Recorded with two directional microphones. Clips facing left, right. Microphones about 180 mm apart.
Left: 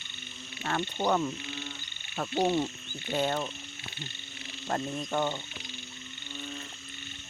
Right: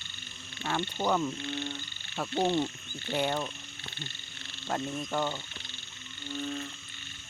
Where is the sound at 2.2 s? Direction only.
15° left (ahead or behind).